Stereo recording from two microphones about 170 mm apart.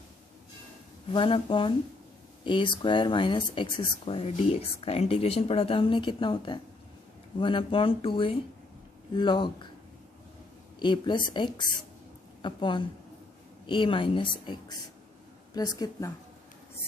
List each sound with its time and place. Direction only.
1.0 s speech: 30° left (ahead or behind)
10.8 s a woman's voice: 25° left (ahead or behind)